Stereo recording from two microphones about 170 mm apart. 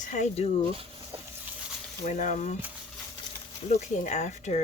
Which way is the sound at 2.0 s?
45° left (ahead or behind).